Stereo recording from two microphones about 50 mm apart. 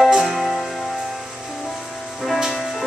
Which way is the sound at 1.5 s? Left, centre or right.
Centre.